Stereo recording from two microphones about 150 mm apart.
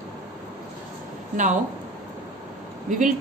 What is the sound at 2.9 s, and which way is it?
Speech, 60° right (ahead or behind).